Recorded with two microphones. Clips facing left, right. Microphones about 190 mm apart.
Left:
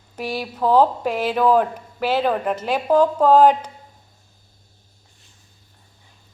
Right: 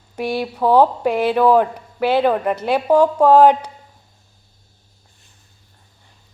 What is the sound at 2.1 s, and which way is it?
Speech, 10° right (ahead or behind).